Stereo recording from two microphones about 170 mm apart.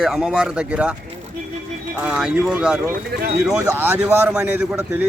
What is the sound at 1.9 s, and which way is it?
Speech, 5° right (ahead or behind).